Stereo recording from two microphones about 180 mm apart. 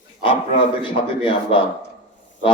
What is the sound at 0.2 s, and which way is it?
A man's voice, 25° left (ahead or behind).